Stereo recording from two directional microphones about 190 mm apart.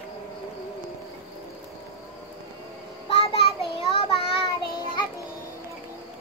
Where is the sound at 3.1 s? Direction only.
30° left (ahead or behind).